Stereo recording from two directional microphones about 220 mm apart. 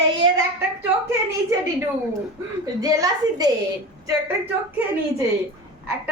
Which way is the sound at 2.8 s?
15° right (ahead or behind).